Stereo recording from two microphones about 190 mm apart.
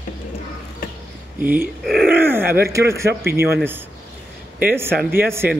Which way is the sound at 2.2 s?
10° right (ahead or behind).